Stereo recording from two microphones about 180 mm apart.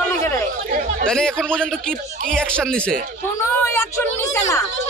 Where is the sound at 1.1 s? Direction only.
5° left (ahead or behind).